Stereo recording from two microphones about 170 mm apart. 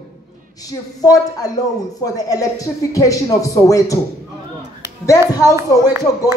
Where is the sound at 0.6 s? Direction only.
20° left (ahead or behind).